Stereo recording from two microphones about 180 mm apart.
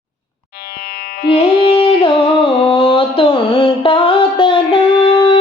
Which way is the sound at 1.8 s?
30° left (ahead or behind).